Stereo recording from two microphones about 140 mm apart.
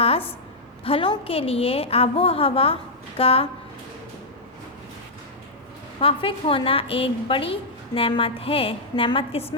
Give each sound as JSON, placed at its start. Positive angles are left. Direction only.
{"t": 0.9, "sound": "a woman's voice", "side_deg": 40}
{"t": 6.0, "sound": "a woman's voice", "side_deg": 40}